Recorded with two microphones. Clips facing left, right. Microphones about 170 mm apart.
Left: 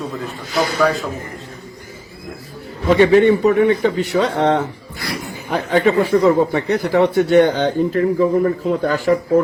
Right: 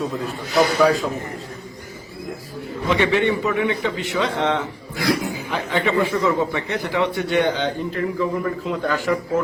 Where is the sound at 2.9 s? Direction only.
40° left (ahead or behind).